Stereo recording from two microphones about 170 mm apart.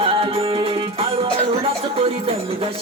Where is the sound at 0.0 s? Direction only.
35° right (ahead or behind).